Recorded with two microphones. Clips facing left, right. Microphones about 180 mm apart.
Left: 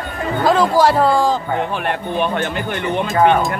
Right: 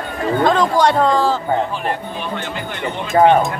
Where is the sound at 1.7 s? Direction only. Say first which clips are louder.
Left 3 dB; 60° left (ahead or behind).